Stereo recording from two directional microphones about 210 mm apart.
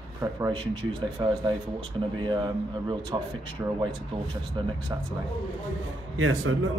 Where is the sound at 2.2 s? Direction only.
20° right (ahead or behind).